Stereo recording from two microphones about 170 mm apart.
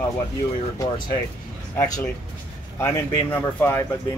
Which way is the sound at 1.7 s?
20° left (ahead or behind).